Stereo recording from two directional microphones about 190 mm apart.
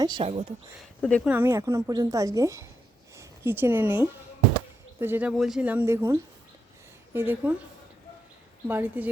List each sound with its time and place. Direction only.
0.0 s speech: 25° right (ahead or behind)
0.8 s speech: centre (ahead or behind)
1.3 s a woman's voice: 10° right (ahead or behind)
8.6 s a woman's voice: 10° right (ahead or behind)